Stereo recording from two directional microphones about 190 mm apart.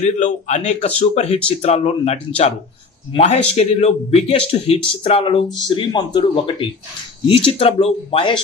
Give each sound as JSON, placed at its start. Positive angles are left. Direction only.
{"t": 0.0, "sound": "a man's voice", "side_deg": 40}